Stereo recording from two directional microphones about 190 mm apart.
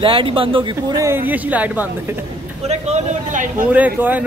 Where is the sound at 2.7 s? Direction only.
35° right (ahead or behind).